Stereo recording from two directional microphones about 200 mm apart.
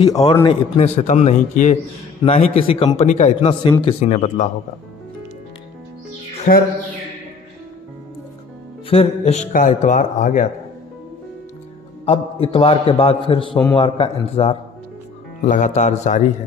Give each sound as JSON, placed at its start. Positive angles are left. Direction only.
{"t": 0.0, "sound": "a man's voice", "side_deg": 20}
{"t": 6.3, "sound": "music", "side_deg": 40}
{"t": 8.8, "sound": "a man's voice", "side_deg": 30}
{"t": 12.1, "sound": "a man's voice", "side_deg": 30}